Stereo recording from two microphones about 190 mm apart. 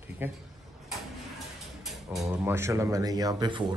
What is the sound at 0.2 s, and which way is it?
Speech, 10° right (ahead or behind).